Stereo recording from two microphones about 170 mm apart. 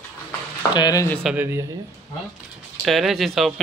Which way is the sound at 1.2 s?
10° right (ahead or behind).